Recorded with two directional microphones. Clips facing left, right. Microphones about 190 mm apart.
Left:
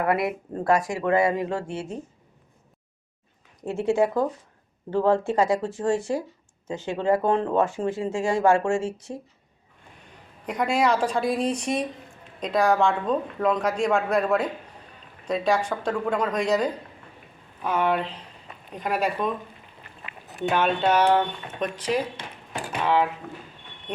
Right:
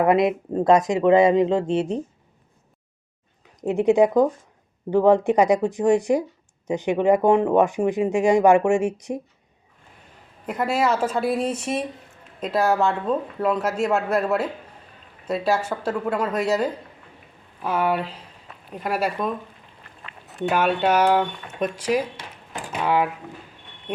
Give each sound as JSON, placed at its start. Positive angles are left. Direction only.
{"t": 0.0, "sound": "speech", "side_deg": -20}
{"t": 3.6, "sound": "speech", "side_deg": -20}
{"t": 10.4, "sound": "speech", "side_deg": -5}
{"t": 20.5, "sound": "speech", "side_deg": -10}